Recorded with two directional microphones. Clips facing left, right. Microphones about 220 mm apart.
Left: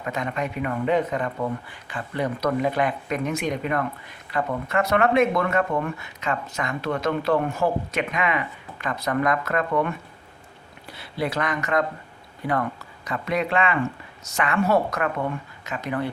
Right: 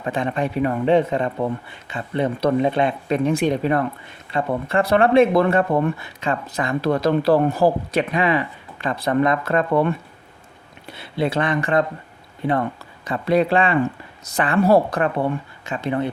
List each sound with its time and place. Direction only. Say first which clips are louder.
0.0 s speech: right 5 dB; 30° right (ahead or behind)